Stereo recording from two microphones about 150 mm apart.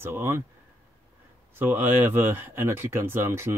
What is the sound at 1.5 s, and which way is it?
Speech, 15° right (ahead or behind).